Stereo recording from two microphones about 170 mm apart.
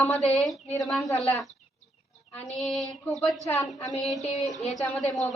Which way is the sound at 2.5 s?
Centre (ahead or behind).